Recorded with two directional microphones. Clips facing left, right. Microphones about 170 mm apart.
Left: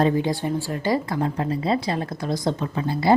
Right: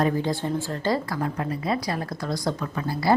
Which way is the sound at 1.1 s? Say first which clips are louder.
Left 3 dB; 25° left (ahead or behind).